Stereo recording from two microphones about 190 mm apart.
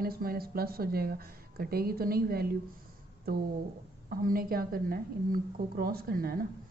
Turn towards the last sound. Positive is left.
turn(degrees=-50)  # may be behind; listen again after turning